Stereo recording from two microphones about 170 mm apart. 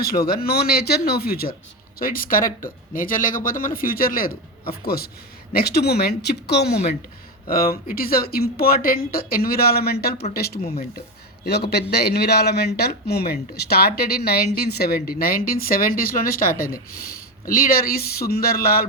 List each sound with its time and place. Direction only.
0.0 s speech: 65° left (ahead or behind)
7.5 s speech: 60° left (ahead or behind)